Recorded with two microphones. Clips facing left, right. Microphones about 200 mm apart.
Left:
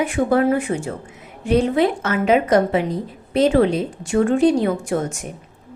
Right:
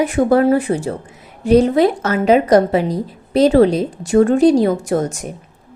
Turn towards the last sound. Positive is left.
turn(degrees=-40)  # may be behind; listen again after turning